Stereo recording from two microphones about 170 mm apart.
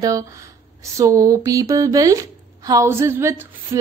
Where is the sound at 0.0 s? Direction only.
20° right (ahead or behind).